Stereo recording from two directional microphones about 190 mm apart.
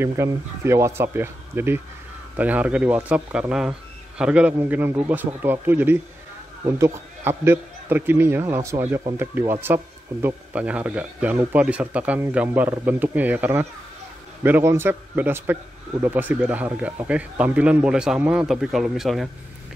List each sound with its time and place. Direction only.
0.0 s a man's voice: 15° right (ahead or behind)